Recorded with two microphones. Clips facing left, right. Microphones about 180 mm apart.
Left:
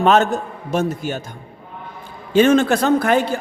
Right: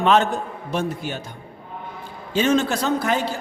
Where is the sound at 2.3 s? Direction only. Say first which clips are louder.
Left 6 dB; 55° left (ahead or behind).